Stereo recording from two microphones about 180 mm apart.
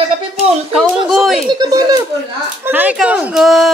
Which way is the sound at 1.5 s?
20° right (ahead or behind).